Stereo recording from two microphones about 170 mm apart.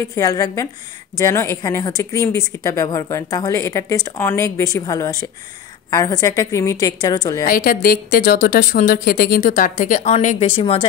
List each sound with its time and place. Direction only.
0.1 s a woman's voice: 20° left (ahead or behind)
7.4 s speech: 55° left (ahead or behind); by 10.9 s 30° left (ahead or behind)